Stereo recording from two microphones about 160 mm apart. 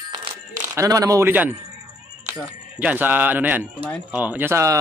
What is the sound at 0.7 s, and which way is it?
A man's voice, 20° right (ahead or behind).